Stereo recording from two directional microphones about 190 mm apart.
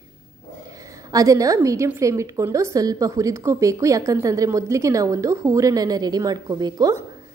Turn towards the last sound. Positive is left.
turn(degrees=-20)  # may be behind; listen again after turning